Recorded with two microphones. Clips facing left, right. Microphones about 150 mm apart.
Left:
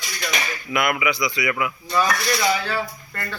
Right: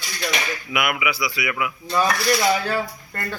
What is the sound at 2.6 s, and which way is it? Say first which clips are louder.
Speech: right 2 dB; 45° right (ahead or behind).